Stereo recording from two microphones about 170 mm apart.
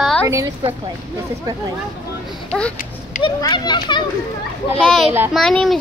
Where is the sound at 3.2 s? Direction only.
25° left (ahead or behind).